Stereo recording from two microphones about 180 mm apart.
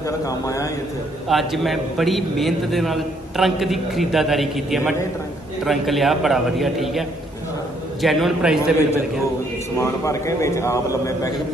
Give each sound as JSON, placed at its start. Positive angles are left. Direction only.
{"t": 0.2, "sound": "a man's voice", "side_deg": 20}
{"t": 1.3, "sound": "a man's voice", "side_deg": 0}
{"t": 9.8, "sound": "a man's voice", "side_deg": 15}